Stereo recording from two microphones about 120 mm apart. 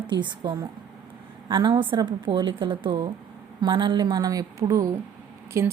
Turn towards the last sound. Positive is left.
turn(degrees=-25)  # may be behind; listen again after turning